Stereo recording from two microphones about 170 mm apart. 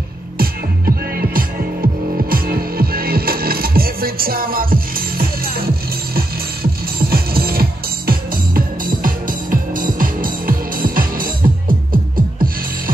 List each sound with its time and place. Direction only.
0.4 s music: 60° right (ahead or behind)